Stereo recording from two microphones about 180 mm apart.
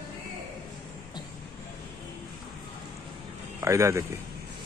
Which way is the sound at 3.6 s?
15° right (ahead or behind).